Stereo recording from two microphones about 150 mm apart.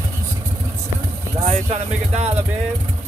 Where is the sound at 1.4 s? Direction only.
45° right (ahead or behind).